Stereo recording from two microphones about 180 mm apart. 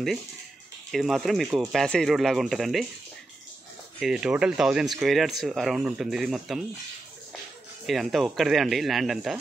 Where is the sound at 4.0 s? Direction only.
5° right (ahead or behind).